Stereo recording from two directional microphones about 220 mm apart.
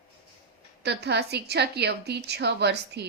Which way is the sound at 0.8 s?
50° right (ahead or behind).